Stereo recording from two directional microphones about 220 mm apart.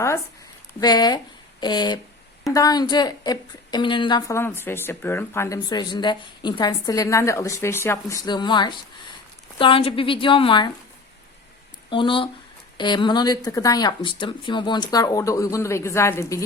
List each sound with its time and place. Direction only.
0.7 s a woman's voice: 20° left (ahead or behind)
11.9 s a woman's voice: 20° left (ahead or behind)